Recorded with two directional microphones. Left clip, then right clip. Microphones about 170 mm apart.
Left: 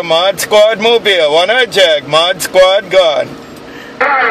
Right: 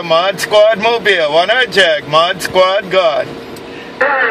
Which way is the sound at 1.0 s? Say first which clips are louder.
Left 2 dB; 40° left (ahead or behind).